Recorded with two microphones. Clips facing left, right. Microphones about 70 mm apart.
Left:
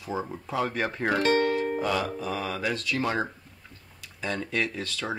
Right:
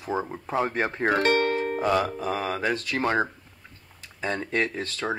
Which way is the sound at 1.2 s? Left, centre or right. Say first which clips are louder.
Right 1 dB; right.